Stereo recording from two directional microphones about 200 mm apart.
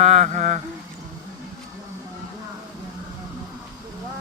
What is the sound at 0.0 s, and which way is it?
Mantra, 35° right (ahead or behind).